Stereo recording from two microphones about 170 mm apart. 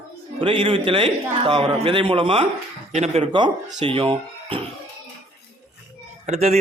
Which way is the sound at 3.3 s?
25° right (ahead or behind).